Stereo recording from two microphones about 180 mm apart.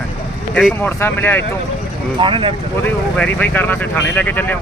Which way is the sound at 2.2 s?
30° right (ahead or behind).